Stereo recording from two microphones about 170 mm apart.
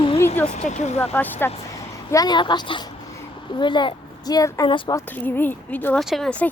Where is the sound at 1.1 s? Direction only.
10° left (ahead or behind).